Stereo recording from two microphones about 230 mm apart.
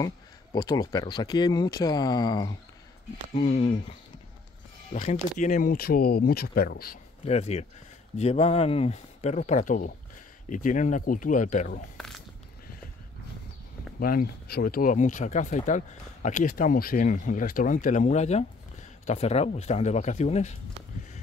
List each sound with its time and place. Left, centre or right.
0.7 s speech: centre
4.9 s speech: left
7.2 s speech: left
13.9 s speech: left